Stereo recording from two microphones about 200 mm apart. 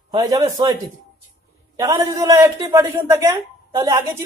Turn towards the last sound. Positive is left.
turn(degrees=-15)  # may be behind; listen again after turning